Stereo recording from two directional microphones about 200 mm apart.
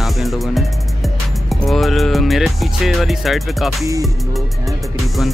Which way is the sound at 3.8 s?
15° right (ahead or behind).